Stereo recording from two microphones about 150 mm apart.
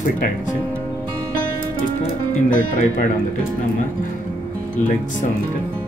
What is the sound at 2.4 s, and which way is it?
Speech, 60° left (ahead or behind).